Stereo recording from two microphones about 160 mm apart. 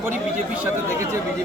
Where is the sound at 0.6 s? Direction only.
20° right (ahead or behind).